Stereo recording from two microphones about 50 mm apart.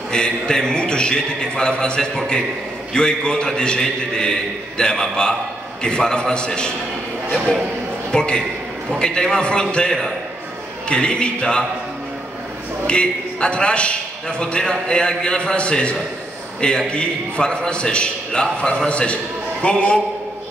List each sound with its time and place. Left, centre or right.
0.1 s a man's voice: centre
8.1 s a man's voice: centre
12.8 s a man's voice: centre